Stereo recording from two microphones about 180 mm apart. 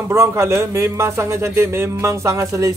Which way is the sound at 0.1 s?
15° right (ahead or behind).